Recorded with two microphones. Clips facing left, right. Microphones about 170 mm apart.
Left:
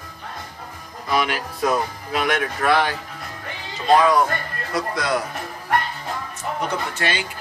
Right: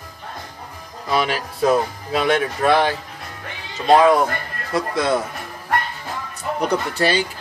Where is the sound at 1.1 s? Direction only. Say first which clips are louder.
Right 1 dB; 30° right (ahead or behind).